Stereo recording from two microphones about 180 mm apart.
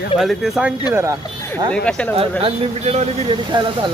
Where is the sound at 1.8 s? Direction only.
5° left (ahead or behind).